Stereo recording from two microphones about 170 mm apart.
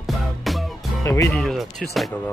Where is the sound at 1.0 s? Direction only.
20° left (ahead or behind).